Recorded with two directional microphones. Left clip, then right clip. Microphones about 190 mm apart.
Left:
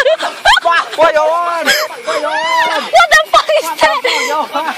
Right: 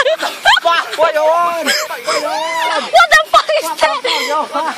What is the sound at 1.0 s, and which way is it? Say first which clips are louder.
A man's voice: even; 35° left (ahead or behind).